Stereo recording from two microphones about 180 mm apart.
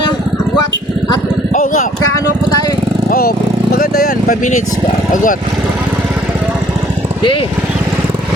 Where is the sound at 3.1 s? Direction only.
55° left (ahead or behind).